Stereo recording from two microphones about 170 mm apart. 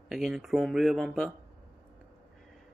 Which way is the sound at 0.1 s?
Centre (ahead or behind).